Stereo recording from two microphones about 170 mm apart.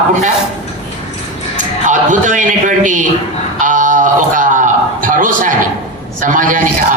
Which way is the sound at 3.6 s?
50° right (ahead or behind).